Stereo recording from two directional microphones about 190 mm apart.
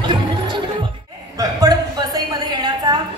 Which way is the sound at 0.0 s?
25° right (ahead or behind).